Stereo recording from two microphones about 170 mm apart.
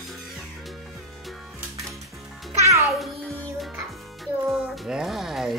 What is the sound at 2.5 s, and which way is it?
Music, 15° right (ahead or behind).